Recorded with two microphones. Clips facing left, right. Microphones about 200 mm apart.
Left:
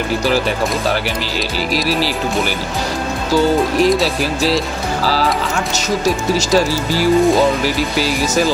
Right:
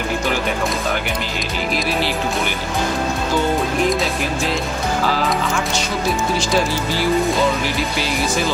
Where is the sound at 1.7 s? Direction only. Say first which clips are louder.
Left 3 dB; 35° left (ahead or behind).